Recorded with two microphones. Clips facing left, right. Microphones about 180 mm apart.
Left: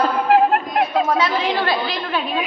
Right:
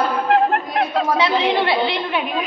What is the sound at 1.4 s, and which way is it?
Speech, 20° right (ahead or behind).